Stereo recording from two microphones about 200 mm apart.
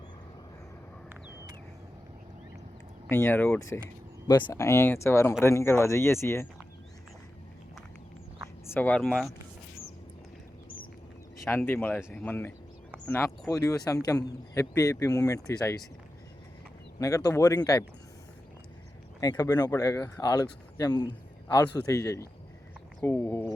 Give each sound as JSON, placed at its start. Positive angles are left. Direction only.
{"t": 3.1, "sound": "a man's voice", "side_deg": 10}
{"t": 8.6, "sound": "speech", "side_deg": 10}
{"t": 11.4, "sound": "a man's voice", "side_deg": 10}
{"t": 11.9, "sound": "speech", "side_deg": -5}
{"t": 12.2, "sound": "a man's voice", "side_deg": 10}
{"t": 17.0, "sound": "a man's voice", "side_deg": 15}
{"t": 19.2, "sound": "a man's voice", "side_deg": 20}